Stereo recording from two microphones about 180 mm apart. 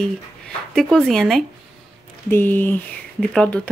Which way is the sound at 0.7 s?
5° left (ahead or behind).